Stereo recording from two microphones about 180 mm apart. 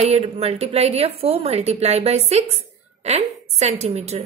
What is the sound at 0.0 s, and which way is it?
A woman's voice, 35° right (ahead or behind).